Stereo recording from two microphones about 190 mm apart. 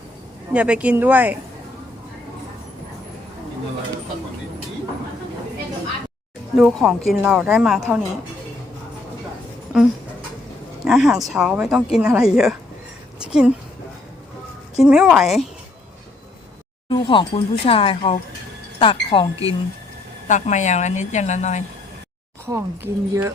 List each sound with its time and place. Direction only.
0.5 s speech: 5° right (ahead or behind)
6.6 s speech: centre (ahead or behind)
9.7 s speech: 5° right (ahead or behind)
13.1 s a sound: 5° right (ahead or behind)
14.8 s speech: 5° right (ahead or behind)
16.9 s speech: 25° left (ahead or behind)
20.2 s a woman's voice: 40° left (ahead or behind)
22.4 s speech: 15° right (ahead or behind)